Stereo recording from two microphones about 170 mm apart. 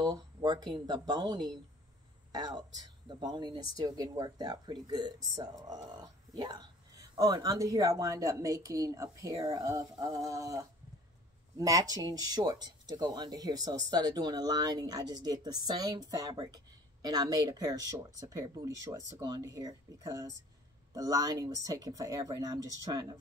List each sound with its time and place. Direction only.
0.0 s speech: 25° right (ahead or behind)